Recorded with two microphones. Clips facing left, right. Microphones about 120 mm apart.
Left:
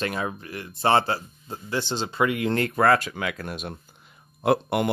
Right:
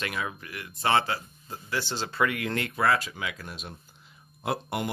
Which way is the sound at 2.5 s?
45° left (ahead or behind).